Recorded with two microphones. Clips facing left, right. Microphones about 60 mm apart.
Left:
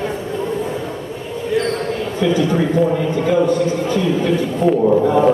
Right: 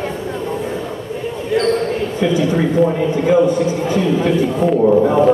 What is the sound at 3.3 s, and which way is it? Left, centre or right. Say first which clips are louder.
A man's voice: right 2 dB; centre.